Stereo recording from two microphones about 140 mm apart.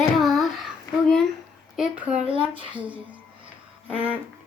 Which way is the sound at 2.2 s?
40° right (ahead or behind).